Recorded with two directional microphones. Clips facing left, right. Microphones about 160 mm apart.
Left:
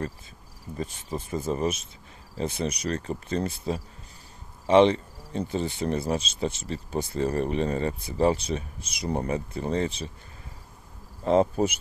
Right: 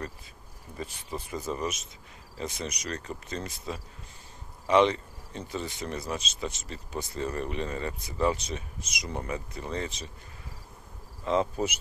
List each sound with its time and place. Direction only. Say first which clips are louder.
1.3 s speech: left 6 dB; 30° left (ahead or behind)
11.2 s speech: left 6 dB; 40° left (ahead or behind)